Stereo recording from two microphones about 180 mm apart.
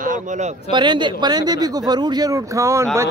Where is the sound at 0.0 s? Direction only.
45° right (ahead or behind).